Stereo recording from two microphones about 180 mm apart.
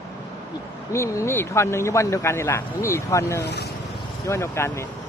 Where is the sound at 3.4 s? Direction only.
65° left (ahead or behind).